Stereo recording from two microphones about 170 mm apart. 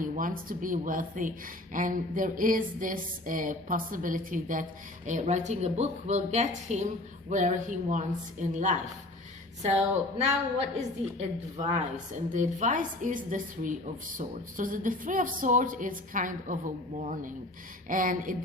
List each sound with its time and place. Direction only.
0.0 s a woman's voice: 55° right (ahead or behind)